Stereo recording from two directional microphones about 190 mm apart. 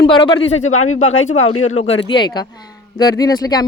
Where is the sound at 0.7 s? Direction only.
90° left.